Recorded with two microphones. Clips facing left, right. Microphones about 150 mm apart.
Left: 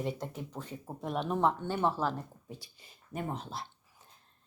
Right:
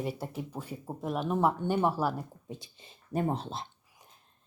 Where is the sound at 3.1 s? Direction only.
35° right (ahead or behind).